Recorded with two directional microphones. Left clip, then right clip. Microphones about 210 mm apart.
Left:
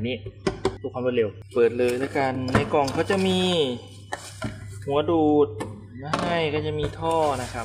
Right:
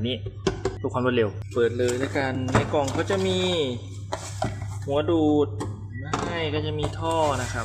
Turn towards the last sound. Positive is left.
turn(degrees=5)  # may be behind; listen again after turning